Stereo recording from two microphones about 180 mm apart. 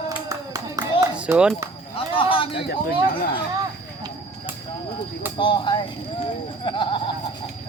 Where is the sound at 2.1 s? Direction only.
30° left (ahead or behind).